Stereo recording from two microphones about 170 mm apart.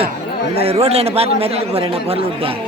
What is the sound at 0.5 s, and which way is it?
A man's voice, 35° right (ahead or behind).